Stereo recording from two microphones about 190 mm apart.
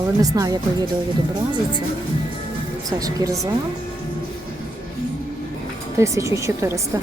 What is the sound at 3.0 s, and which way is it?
Speech, 15° right (ahead or behind).